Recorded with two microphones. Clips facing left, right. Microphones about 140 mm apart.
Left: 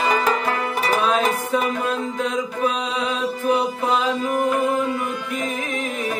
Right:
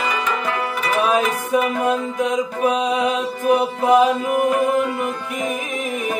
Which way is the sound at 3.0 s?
20° right (ahead or behind).